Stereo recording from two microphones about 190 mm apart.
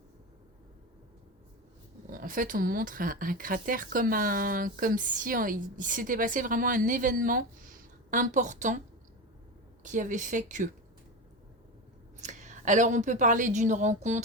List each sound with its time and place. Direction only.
2.0 s speech: 45° right (ahead or behind)
9.8 s speech: 40° right (ahead or behind)
12.2 s a woman's voice: 40° right (ahead or behind)